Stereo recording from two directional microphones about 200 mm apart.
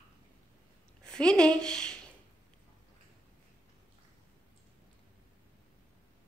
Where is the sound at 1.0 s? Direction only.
5° left (ahead or behind).